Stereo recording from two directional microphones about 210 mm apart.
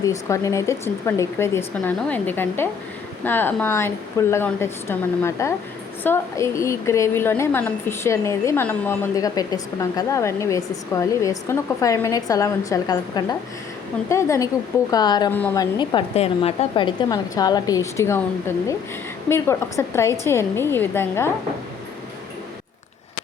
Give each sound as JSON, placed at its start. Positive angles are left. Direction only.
{"t": 0.0, "sound": "a woman's voice", "side_deg": 15}
{"t": 15.3, "sound": "a woman's voice", "side_deg": 10}
{"t": 15.8, "sound": "a woman's voice", "side_deg": 20}